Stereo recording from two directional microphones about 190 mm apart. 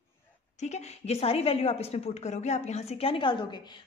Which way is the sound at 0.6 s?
35° left (ahead or behind).